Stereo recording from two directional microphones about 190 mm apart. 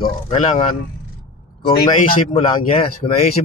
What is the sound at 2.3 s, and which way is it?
Speech, 30° left (ahead or behind).